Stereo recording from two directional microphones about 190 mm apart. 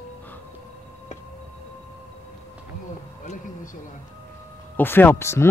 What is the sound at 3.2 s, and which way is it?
Music, 40° left (ahead or behind).